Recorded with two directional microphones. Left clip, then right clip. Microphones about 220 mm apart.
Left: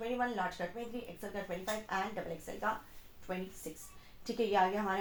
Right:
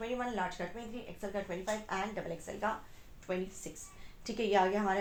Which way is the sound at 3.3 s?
35° right (ahead or behind).